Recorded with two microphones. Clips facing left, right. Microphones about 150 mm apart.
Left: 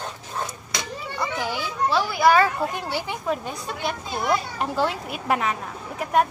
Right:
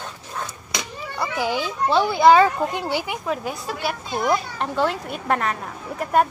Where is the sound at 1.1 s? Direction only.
10° right (ahead or behind).